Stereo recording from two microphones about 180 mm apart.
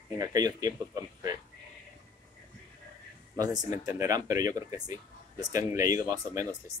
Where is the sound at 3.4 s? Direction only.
20° right (ahead or behind).